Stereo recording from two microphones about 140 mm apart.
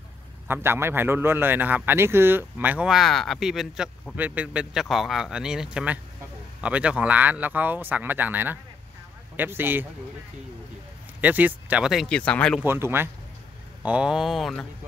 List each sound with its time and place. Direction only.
0.5 s a man's voice: 15° right (ahead or behind)
11.1 s speech: 10° right (ahead or behind); by 12.5 s 10° left (ahead or behind)
12.5 s a man's voice: 15° right (ahead or behind); by 14.7 s 5° left (ahead or behind)